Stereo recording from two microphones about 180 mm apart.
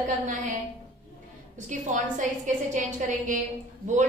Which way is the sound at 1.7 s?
45° right (ahead or behind).